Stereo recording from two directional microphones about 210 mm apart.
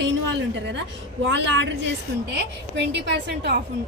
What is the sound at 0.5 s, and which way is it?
A woman's voice, 55° right (ahead or behind).